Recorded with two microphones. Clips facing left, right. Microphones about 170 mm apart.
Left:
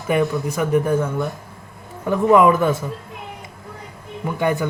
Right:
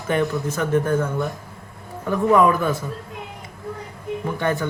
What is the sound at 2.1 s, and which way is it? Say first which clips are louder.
Speech: left 3 dB; 20° left (ahead or behind).